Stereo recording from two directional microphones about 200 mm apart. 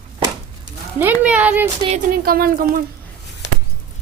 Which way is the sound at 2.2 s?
45° right (ahead or behind).